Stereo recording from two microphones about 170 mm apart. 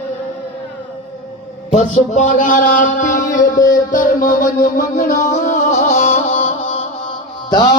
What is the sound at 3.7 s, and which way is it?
Music, 50° left (ahead or behind).